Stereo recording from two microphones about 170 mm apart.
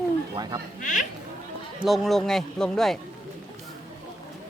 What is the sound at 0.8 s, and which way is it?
Speech, 50° left (ahead or behind).